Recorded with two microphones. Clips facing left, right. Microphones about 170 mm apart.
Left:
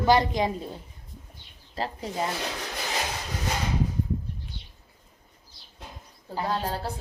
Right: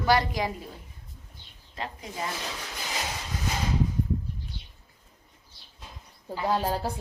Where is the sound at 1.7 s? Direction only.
35° left (ahead or behind).